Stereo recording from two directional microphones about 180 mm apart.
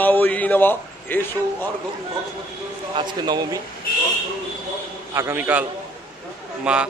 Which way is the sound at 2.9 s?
20° right (ahead or behind).